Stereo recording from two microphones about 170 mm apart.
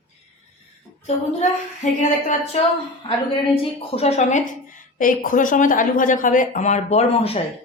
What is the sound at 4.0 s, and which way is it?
Speech, 40° left (ahead or behind).